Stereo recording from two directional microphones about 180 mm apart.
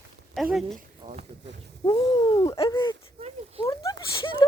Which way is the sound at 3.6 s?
20° left (ahead or behind).